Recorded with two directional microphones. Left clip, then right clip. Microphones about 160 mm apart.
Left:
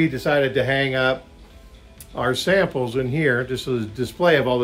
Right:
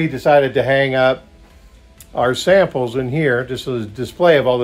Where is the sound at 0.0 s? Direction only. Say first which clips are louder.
Right 6 dB; 30° right (ahead or behind).